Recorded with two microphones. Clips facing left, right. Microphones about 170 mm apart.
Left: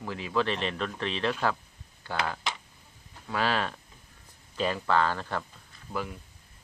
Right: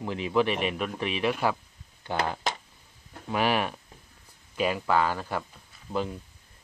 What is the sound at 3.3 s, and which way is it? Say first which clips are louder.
Speech: right 3 dB; 15° right (ahead or behind).